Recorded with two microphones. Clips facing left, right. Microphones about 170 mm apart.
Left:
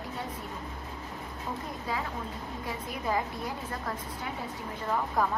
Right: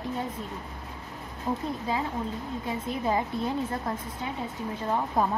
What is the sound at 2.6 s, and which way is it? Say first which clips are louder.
Speech: right 5 dB; 25° right (ahead or behind).